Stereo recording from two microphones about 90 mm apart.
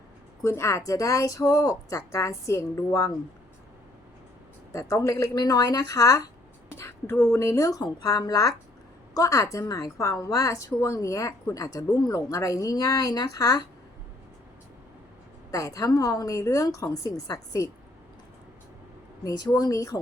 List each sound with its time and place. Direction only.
0.4 s speech: 30° left (ahead or behind)
4.7 s speech: 35° left (ahead or behind)
6.7 s a sound: 30° left (ahead or behind)
7.3 s speech: 35° left (ahead or behind)
7.8 s speech: 45° left (ahead or behind)
15.5 s speech: 40° left (ahead or behind)
19.2 s speech: 45° left (ahead or behind)